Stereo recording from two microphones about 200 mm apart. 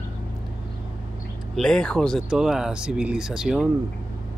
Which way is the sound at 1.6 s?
5° left (ahead or behind).